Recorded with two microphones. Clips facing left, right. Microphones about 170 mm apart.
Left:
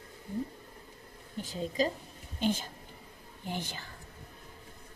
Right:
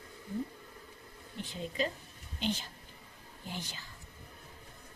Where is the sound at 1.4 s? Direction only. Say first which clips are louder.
Left 4 dB; 40° left (ahead or behind); by 3.8 s 55° left (ahead or behind).